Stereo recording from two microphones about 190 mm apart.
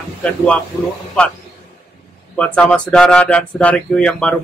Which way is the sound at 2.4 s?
5° left (ahead or behind).